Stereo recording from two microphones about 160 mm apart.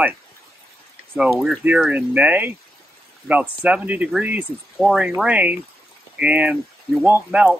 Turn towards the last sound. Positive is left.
turn(degrees=-5)  # may be behind; listen again after turning